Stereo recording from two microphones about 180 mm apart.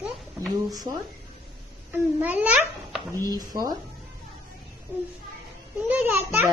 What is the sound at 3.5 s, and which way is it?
Speech, 20° right (ahead or behind).